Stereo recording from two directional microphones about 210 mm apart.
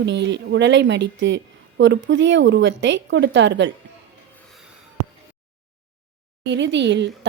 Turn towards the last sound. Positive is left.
turn(degrees=-55)  # may be behind; listen again after turning